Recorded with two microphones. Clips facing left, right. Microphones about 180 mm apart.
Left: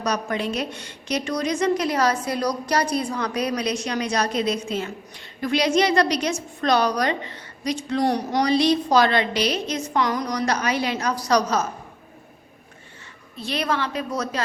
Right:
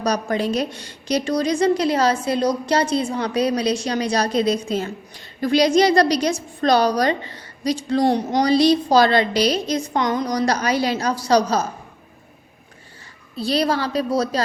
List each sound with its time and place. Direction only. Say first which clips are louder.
0.0 s a woman's voice: right 4 dB; 35° right (ahead or behind)
13.3 s a woman's voice: right 5 dB; 35° right (ahead or behind)